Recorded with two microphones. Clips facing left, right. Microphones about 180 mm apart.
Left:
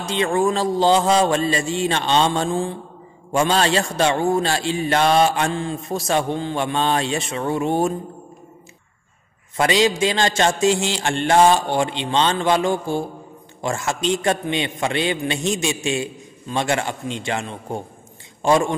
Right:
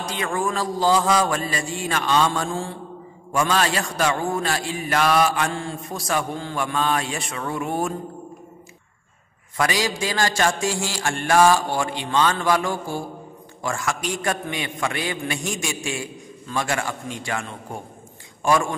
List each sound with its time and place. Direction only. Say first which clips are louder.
0.0 s a man's voice: left 6 dB; 25° left (ahead or behind)
9.6 s a man's voice: left 6 dB; 25° left (ahead or behind)